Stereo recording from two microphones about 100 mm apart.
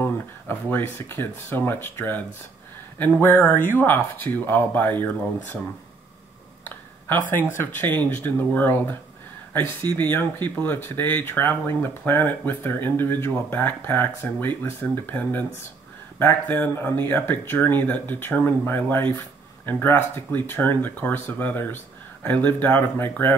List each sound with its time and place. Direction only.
0.0 s speech: 20° left (ahead or behind)
6.6 s speech: 20° left (ahead or behind)